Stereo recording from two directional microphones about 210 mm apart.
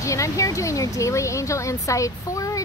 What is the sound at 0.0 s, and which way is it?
Speech, 15° left (ahead or behind).